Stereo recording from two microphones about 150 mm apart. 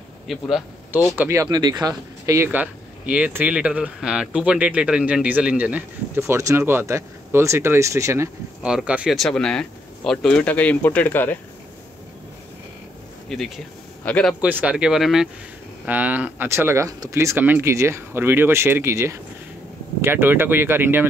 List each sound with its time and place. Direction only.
0.3 s speech: centre (ahead or behind)
1.1 s speech: 15° right (ahead or behind)
8.6 s speech: 5° right (ahead or behind); by 11.3 s 10° left (ahead or behind)
13.3 s a man's voice: centre (ahead or behind)
14.4 s speech: 10° right (ahead or behind)